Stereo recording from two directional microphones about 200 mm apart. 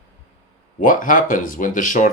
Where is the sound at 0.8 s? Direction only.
40° left (ahead or behind).